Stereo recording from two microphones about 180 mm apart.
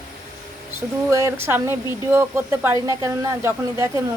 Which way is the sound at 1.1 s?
15° right (ahead or behind).